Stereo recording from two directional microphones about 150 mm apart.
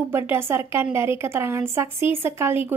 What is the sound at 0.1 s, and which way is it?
A woman's voice, 15° right (ahead or behind).